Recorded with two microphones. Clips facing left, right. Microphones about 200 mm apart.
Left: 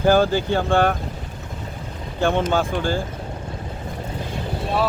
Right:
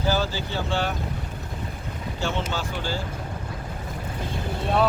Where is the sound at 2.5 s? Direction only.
50° left (ahead or behind).